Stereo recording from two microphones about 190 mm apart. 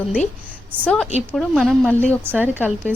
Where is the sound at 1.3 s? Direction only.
Centre (ahead or behind).